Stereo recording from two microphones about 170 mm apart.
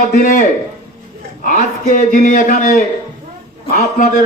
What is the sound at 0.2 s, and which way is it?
Speech, 50° left (ahead or behind).